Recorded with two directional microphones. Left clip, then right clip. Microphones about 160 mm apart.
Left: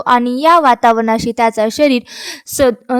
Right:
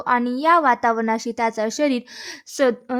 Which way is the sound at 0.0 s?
30° left (ahead or behind).